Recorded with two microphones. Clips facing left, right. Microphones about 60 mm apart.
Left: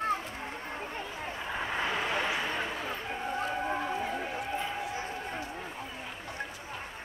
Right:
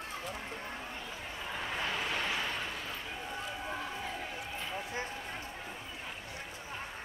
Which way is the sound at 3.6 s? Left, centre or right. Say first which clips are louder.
Left 7 dB; left.